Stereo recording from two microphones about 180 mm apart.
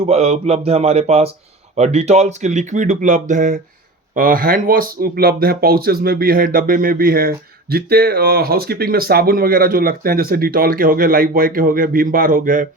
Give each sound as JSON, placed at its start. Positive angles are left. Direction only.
{"t": 0.0, "sound": "speech", "side_deg": -35}